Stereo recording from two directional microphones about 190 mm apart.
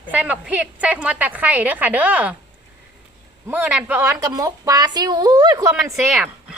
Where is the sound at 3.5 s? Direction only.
10° right (ahead or behind).